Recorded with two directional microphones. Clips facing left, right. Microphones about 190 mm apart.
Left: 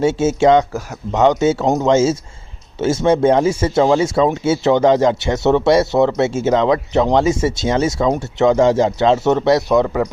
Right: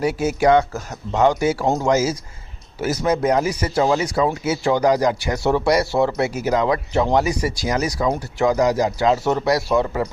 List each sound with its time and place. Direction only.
0.0 s speech: 25° left (ahead or behind)